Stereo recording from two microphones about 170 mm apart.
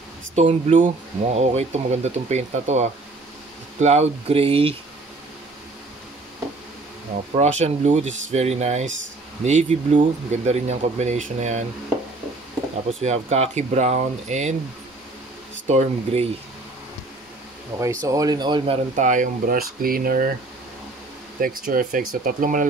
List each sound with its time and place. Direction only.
0.4 s speech: 40° right (ahead or behind)
7.3 s speech: 40° right (ahead or behind)
13.0 s speech: 40° right (ahead or behind)
15.6 s speech: 40° right (ahead or behind)
18.0 s speech: 20° right (ahead or behind)
18.9 s speech: 45° right (ahead or behind)
21.4 s speech: 55° right (ahead or behind)